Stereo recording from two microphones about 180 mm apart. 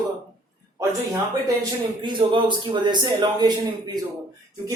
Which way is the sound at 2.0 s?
25° right (ahead or behind).